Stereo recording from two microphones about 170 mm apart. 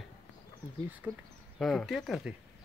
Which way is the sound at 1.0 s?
10° right (ahead or behind).